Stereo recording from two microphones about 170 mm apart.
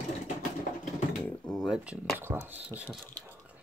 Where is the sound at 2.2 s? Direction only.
15° right (ahead or behind).